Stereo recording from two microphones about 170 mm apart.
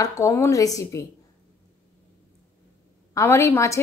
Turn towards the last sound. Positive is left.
turn(degrees=15)  # may be behind; listen again after turning